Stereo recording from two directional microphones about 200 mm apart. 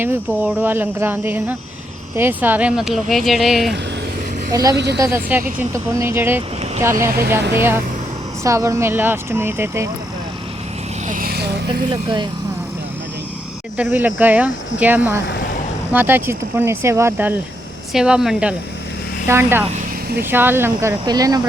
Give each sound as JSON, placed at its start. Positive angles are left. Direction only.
{"t": 0.0, "sound": "speech", "side_deg": -10}
{"t": 4.5, "sound": "speech", "side_deg": -15}
{"t": 7.5, "sound": "speech", "side_deg": -10}
{"t": 11.1, "sound": "vehicle", "side_deg": -45}
{"t": 11.9, "sound": "speech", "side_deg": -20}
{"t": 13.7, "sound": "speech", "side_deg": -5}
{"t": 15.2, "sound": "speech", "side_deg": 60}
{"t": 15.9, "sound": "speech", "side_deg": -10}